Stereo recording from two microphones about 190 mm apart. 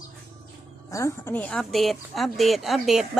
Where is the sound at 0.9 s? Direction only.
15° left (ahead or behind); by 3.0 s centre (ahead or behind).